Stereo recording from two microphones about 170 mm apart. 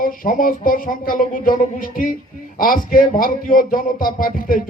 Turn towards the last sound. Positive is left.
turn(degrees=55)  # may be behind; listen again after turning